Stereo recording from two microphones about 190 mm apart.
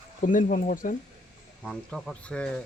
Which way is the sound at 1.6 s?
Centre (ahead or behind).